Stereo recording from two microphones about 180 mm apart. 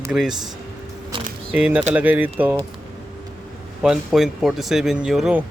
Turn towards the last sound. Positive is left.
turn(degrees=-5)  # may be behind; listen again after turning